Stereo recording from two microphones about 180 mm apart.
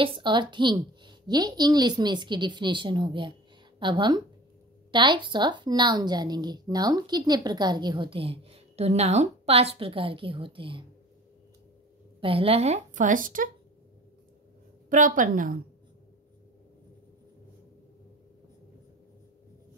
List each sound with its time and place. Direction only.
0.0 s a woman's voice: 25° right (ahead or behind)
12.2 s a woman's voice: 30° right (ahead or behind); by 13.5 s 50° right (ahead or behind)
14.9 s a woman's voice: 45° right (ahead or behind)